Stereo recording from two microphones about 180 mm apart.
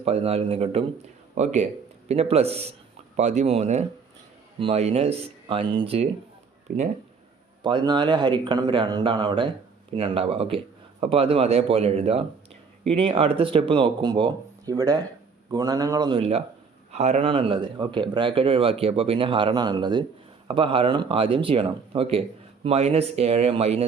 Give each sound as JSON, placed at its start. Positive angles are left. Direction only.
{"t": 0.0, "sound": "speech", "side_deg": -35}
{"t": 6.7, "sound": "speech", "side_deg": -50}
{"t": 7.6, "sound": "speech", "side_deg": -25}